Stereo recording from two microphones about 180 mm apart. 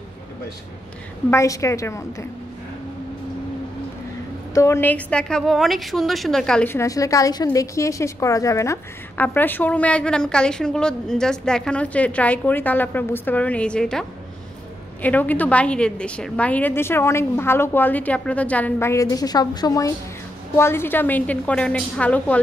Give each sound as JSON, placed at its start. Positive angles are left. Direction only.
{"t": 1.3, "sound": "a woman's voice", "side_deg": 15}
{"t": 4.6, "sound": "a woman's voice", "side_deg": 15}